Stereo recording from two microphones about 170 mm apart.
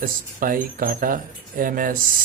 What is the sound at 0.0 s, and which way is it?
Speech, 55° right (ahead or behind).